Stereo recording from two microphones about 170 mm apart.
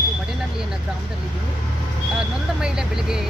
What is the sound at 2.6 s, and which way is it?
Speech, 5° right (ahead or behind).